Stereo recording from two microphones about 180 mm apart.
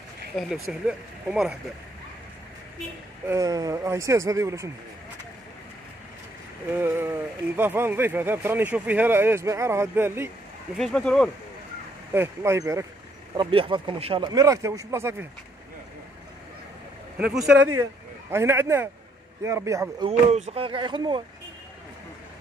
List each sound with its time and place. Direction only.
0.4 s speech: centre (ahead or behind)
3.3 s speech: 20° right (ahead or behind)
6.7 s speech: 10° right (ahead or behind)
10.8 s speech: 5° left (ahead or behind)
12.1 s speech: 15° right (ahead or behind)
13.4 s speech: 30° right (ahead or behind)
17.3 s speech: 5° right (ahead or behind)
18.3 s speech: 15° right (ahead or behind)
20.1 s speech: 40° right (ahead or behind)